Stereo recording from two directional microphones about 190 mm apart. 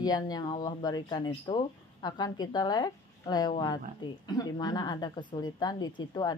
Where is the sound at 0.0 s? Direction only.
20° left (ahead or behind).